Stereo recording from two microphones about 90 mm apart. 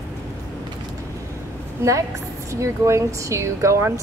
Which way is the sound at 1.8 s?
25° right (ahead or behind).